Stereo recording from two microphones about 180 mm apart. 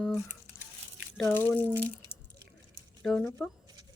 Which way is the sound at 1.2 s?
15° left (ahead or behind).